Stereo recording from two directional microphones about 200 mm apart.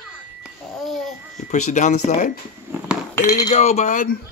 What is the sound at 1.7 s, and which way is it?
Speech, 40° left (ahead or behind).